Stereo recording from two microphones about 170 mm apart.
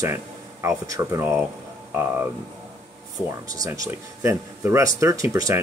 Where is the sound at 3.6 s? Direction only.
15° right (ahead or behind).